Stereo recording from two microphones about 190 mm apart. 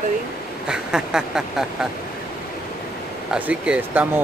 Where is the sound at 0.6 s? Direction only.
5° right (ahead or behind).